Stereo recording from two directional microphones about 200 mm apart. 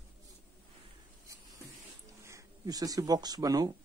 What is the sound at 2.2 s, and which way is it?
Speech, 15° right (ahead or behind).